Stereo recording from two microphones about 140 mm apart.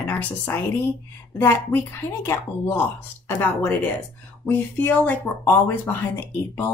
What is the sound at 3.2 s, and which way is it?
A woman's voice, 15° left (ahead or behind).